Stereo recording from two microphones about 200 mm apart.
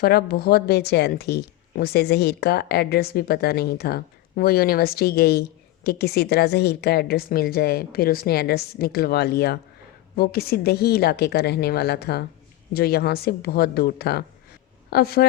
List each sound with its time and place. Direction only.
0.0 s a woman's voice: 50° left (ahead or behind)